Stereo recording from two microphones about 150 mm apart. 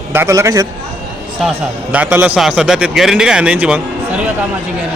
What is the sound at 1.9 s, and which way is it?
A man's voice, 10° right (ahead or behind).